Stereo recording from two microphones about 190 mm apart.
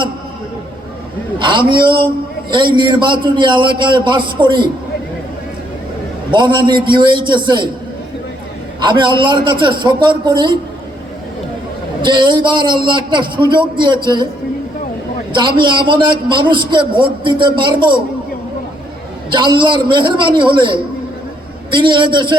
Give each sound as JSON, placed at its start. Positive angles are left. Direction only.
{"t": 1.4, "sound": "a man's voice", "side_deg": -25}
{"t": 6.3, "sound": "a man's voice", "side_deg": -25}
{"t": 8.8, "sound": "a man's voice", "side_deg": -25}
{"t": 12.0, "sound": "a man's voice", "side_deg": -25}
{"t": 15.3, "sound": "a man's voice", "side_deg": -25}
{"t": 19.3, "sound": "a man's voice", "side_deg": -25}